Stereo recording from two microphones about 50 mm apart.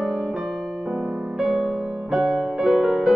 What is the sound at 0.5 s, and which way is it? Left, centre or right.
Music, centre.